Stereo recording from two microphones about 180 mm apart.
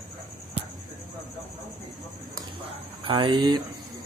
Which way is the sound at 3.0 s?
25° right (ahead or behind).